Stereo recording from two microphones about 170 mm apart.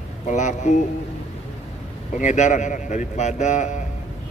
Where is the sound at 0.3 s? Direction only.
45° left (ahead or behind).